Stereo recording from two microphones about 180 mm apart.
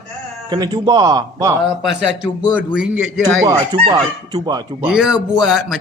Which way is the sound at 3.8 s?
25° right (ahead or behind).